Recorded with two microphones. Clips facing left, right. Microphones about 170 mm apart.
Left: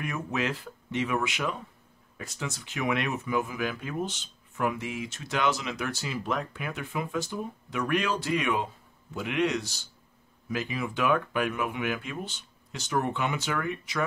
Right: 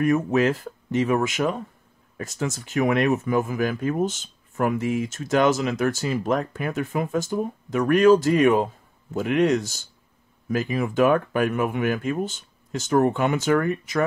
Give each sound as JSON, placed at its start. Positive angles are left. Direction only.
{"t": 0.0, "sound": "speech", "side_deg": -45}